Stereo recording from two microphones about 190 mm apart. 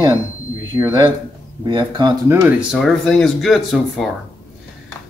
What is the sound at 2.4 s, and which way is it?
Speech, centre (ahead or behind).